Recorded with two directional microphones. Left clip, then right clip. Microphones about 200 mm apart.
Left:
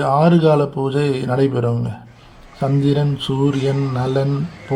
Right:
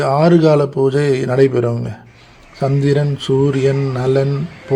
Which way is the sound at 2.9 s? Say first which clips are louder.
Right 5 dB; 25° right (ahead or behind).